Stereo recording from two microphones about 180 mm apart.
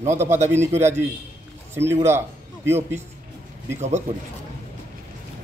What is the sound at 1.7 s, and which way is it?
Speech, 15° right (ahead or behind).